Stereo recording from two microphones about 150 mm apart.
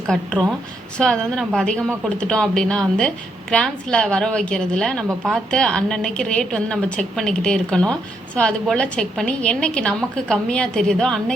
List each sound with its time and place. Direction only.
0.1 s a woman's voice: 5° left (ahead or behind)